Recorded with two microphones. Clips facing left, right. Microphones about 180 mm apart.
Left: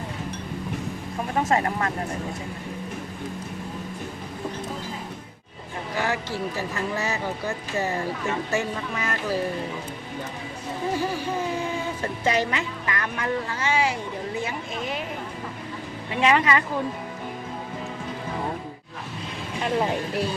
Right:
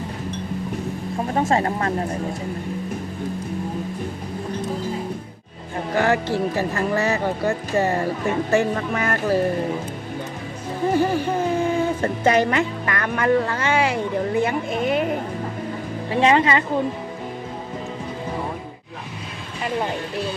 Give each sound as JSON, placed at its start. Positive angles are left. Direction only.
{"t": 1.4, "sound": "speech", "side_deg": -30}
{"t": 5.9, "sound": "speech", "side_deg": -55}
{"t": 10.9, "sound": "music", "side_deg": -55}
{"t": 12.0, "sound": "speech", "side_deg": -55}
{"t": 16.1, "sound": "speech", "side_deg": -30}
{"t": 19.6, "sound": "speech", "side_deg": 0}